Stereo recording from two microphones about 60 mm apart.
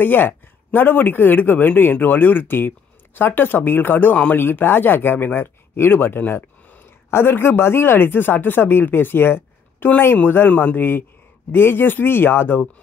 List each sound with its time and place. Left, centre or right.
0.0 s speech: left